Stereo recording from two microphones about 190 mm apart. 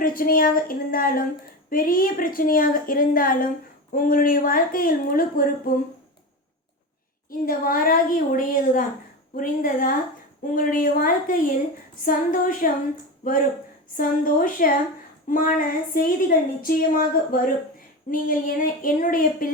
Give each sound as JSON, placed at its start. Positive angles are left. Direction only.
{"t": 0.0, "sound": "a woman's voice", "side_deg": 45}
{"t": 7.3, "sound": "a woman's voice", "side_deg": 50}